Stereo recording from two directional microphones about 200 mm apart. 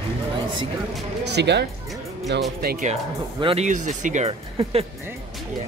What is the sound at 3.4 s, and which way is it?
Speech, 30° right (ahead or behind).